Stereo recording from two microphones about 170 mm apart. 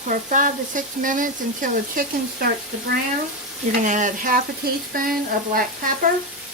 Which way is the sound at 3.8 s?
50° right (ahead or behind).